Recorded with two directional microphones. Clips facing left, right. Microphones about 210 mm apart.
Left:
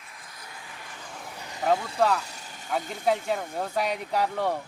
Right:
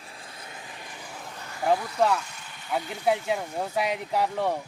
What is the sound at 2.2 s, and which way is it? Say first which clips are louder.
Vehicle: left 1 dB; 40° left (ahead or behind).